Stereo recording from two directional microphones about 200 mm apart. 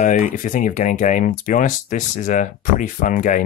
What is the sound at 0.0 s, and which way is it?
Speech, 35° left (ahead or behind).